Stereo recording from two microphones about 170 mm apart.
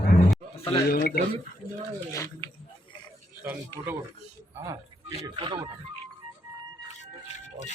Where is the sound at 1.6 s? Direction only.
25° left (ahead or behind).